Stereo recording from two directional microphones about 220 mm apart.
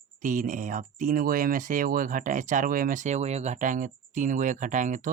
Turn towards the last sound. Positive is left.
turn(degrees=-35)  # may be behind; listen again after turning